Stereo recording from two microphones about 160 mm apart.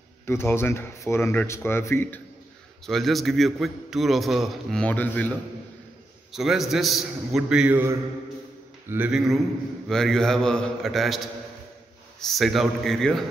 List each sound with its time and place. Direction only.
0.3 s speech: 15° left (ahead or behind)
2.9 s a man's voice: centre (ahead or behind)
6.3 s a man's voice: centre (ahead or behind)
12.2 s a man's voice: centre (ahead or behind)